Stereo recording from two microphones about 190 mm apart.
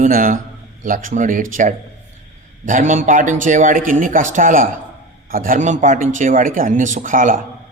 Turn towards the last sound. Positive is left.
turn(degrees=-45)  # may be behind; listen again after turning